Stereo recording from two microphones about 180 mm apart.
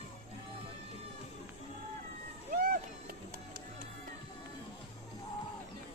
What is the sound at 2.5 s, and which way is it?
Vehicle, 55° right (ahead or behind).